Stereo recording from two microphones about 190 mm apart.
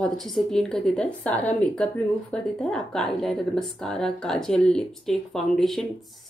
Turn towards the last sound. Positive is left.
turn(degrees=0)  # may be behind; listen again after turning